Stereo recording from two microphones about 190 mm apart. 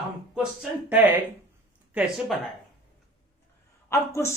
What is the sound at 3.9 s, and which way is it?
Speech, 15° left (ahead or behind).